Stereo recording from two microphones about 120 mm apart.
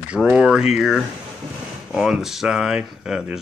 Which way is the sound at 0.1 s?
10° right (ahead or behind).